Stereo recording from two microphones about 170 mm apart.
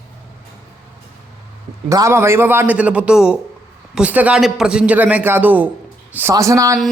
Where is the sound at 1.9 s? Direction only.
15° right (ahead or behind).